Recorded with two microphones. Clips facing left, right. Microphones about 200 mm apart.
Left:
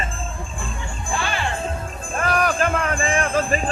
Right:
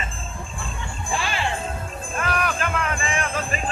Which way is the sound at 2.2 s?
45° left (ahead or behind).